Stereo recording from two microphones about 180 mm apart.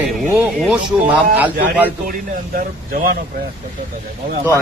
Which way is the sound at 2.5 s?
50° right (ahead or behind).